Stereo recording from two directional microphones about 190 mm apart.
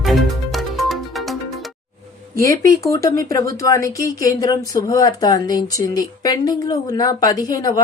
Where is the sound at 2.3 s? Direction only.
15° left (ahead or behind).